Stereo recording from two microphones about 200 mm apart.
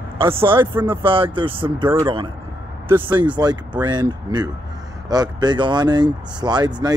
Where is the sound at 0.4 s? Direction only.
25° right (ahead or behind).